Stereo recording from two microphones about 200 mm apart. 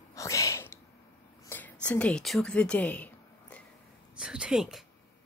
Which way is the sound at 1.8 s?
5° left (ahead or behind).